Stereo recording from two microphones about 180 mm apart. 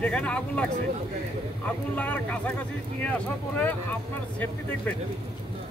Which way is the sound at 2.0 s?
10° left (ahead or behind).